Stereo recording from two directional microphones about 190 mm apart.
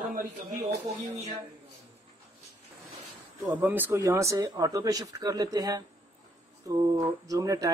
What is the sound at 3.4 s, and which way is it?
Speech, 10° right (ahead or behind).